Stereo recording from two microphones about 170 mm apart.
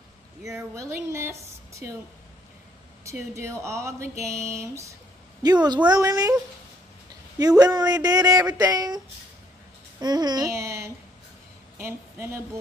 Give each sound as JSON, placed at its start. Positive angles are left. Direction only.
{"t": 0.4, "sound": "speech", "side_deg": -20}
{"t": 3.1, "sound": "speech", "side_deg": -15}
{"t": 7.3, "sound": "a woman's voice", "side_deg": -20}